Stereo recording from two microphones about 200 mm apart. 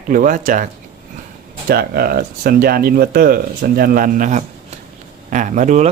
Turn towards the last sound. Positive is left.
turn(degrees=-35)  # may be behind; listen again after turning